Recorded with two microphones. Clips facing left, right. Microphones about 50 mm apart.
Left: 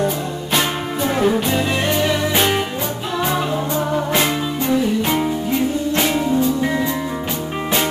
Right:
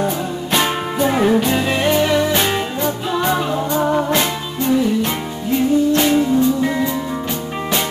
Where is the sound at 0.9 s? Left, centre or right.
Centre.